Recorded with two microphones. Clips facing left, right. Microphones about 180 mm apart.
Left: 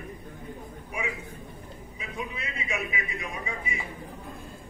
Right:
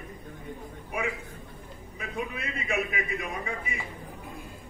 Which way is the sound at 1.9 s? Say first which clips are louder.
Right 3 dB; 55° right (ahead or behind).